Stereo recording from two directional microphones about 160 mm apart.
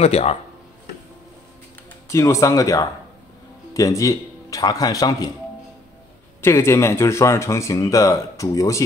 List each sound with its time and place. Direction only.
0.0 s speech: 40° left (ahead or behind)
2.0 s speech: 15° left (ahead or behind)
6.4 s speech: 15° left (ahead or behind)